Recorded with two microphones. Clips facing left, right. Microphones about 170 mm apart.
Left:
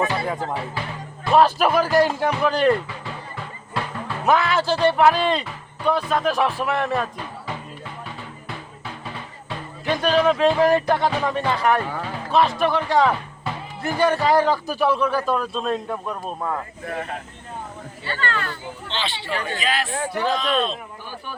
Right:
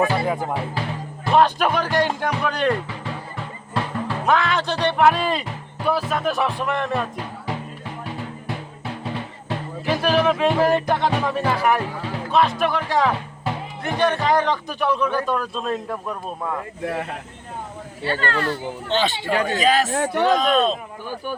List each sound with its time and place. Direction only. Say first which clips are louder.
0.0 s speech: right 3 dB; 10° right (ahead or behind)
1.3 s speech: left 1 dB; 5° left (ahead or behind)
4.3 s speech: left 2 dB; 5° left (ahead or behind)
9.8 s speech: left 1 dB; 5° right (ahead or behind)
18.0 s speech: right 4 dB; 45° right (ahead or behind)